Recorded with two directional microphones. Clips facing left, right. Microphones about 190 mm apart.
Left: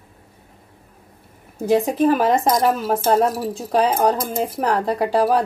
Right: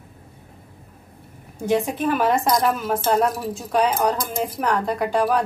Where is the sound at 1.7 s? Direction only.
35° left (ahead or behind).